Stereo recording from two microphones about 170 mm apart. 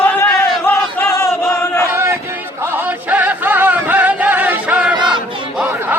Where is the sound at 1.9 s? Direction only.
15° right (ahead or behind).